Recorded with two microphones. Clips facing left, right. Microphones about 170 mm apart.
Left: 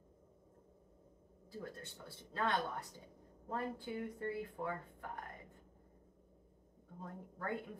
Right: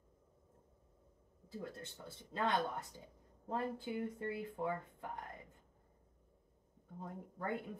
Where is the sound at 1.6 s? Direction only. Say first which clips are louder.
Right 1 dB; 20° right (ahead or behind).